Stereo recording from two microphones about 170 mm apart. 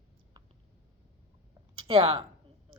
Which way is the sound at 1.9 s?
35° right (ahead or behind).